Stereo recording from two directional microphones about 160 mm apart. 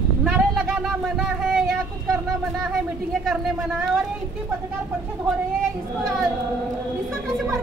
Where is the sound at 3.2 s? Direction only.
Centre (ahead or behind).